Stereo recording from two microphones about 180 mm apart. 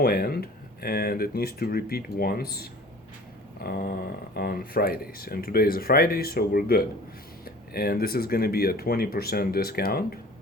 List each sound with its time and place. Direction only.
0.0 s speech: 60° left (ahead or behind)